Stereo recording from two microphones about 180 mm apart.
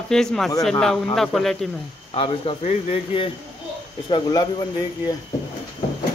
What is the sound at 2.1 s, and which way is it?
A man's voice, 30° left (ahead or behind).